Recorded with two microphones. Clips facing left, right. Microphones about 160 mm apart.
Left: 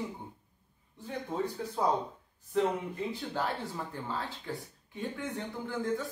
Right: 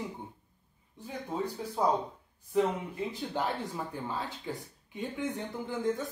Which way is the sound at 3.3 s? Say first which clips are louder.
Right 1 dB; 15° right (ahead or behind).